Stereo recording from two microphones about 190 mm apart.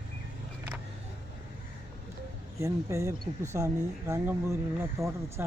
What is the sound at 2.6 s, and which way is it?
Speech, 15° right (ahead or behind).